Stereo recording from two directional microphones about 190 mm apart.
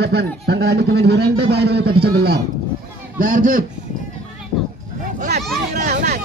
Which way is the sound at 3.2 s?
45° right (ahead or behind).